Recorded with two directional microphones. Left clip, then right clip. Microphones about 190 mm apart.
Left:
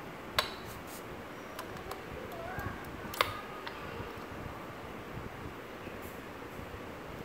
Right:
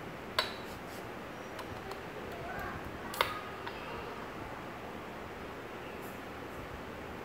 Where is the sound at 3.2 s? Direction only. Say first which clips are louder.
Left 1 dB; 25° left (ahead or behind).